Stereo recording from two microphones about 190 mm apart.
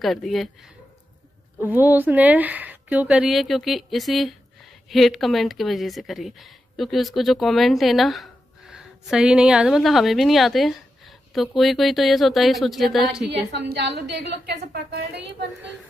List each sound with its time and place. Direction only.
0.0 s a woman's voice: centre (ahead or behind)
13.5 s a woman's voice: 60° right (ahead or behind)